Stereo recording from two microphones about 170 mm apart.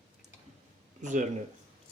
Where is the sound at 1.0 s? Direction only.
45° right (ahead or behind).